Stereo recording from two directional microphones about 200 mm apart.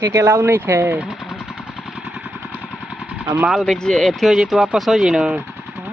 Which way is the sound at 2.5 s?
5° left (ahead or behind).